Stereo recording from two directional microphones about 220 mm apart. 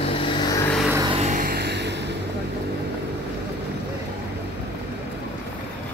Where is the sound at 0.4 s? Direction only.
15° left (ahead or behind).